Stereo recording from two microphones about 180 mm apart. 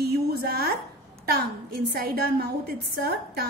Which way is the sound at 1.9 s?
60° right (ahead or behind).